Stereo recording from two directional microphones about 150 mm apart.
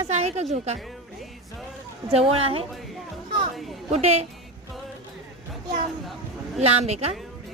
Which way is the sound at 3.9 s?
45° right (ahead or behind).